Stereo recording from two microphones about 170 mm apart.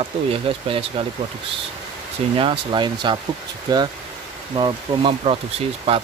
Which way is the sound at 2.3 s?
30° right (ahead or behind).